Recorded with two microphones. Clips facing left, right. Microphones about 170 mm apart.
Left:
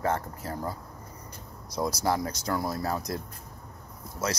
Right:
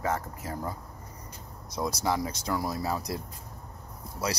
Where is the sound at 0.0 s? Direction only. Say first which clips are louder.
Left 2 dB; 5° right (ahead or behind).